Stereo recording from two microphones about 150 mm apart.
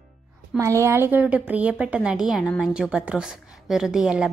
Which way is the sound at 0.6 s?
20° right (ahead or behind).